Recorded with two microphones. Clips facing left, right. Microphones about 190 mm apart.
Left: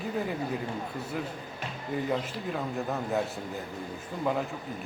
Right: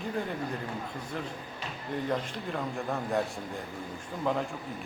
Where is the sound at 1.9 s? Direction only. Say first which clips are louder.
Left 1 dB; 5° left (ahead or behind).